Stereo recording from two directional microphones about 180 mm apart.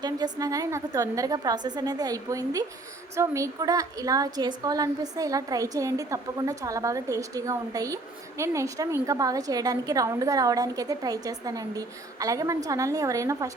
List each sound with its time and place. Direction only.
0.0 s a woman's voice: 20° right (ahead or behind)